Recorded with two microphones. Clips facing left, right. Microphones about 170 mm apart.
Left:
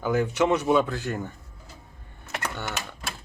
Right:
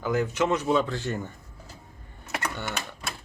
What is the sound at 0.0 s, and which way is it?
Speech, 10° left (ahead or behind).